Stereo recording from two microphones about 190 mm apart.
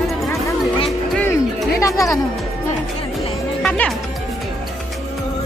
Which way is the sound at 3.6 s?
5° left (ahead or behind).